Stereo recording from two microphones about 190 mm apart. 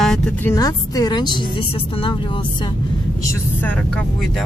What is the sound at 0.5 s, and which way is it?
Speech, 20° left (ahead or behind).